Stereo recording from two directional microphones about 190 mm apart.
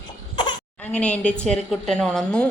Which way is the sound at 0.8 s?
5° left (ahead or behind).